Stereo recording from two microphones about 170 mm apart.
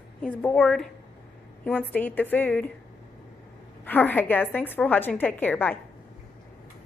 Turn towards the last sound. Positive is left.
turn(degrees=10)  # may be behind; listen again after turning